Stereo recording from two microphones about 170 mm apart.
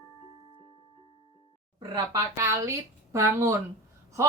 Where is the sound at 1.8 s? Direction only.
20° right (ahead or behind).